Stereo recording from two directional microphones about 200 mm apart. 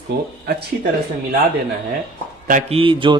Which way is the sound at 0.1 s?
55° right (ahead or behind).